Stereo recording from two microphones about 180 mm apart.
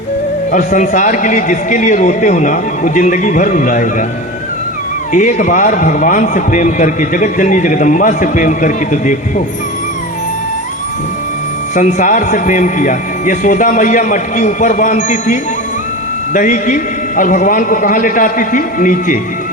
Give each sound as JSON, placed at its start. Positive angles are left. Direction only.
{"t": 0.5, "sound": "a man's voice", "side_deg": 45}
{"t": 5.1, "sound": "a man's voice", "side_deg": 45}
{"t": 11.7, "sound": "a man's voice", "side_deg": 45}